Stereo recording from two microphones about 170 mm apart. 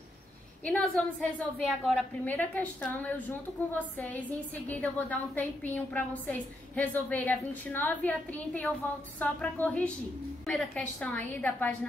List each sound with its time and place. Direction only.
0.7 s a woman's voice: 5° left (ahead or behind)